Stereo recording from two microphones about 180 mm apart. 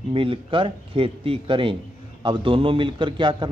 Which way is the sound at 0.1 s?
30° right (ahead or behind).